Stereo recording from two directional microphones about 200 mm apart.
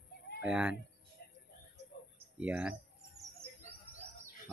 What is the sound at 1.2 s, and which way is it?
Music, 50° left (ahead or behind).